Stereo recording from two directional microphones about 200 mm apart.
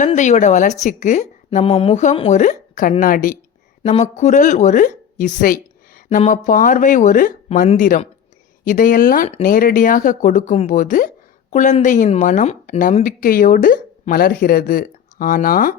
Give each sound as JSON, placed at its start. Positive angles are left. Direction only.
{"t": 0.0, "sound": "speech", "side_deg": 35}